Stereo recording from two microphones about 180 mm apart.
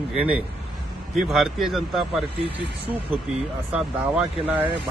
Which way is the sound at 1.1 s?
Centre (ahead or behind).